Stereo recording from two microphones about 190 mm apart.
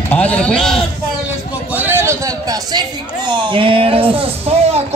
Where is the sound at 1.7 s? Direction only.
10° right (ahead or behind); by 4.8 s 35° right (ahead or behind).